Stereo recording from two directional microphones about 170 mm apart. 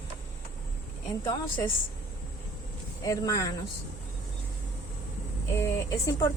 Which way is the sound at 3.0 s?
20° left (ahead or behind).